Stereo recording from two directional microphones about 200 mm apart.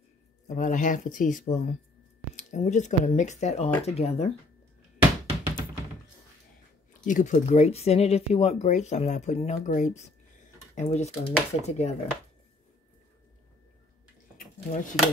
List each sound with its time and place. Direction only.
0.5 s speech: 40° left (ahead or behind)
7.1 s speech: 40° left (ahead or behind)
14.3 s a sound: 40° left (ahead or behind)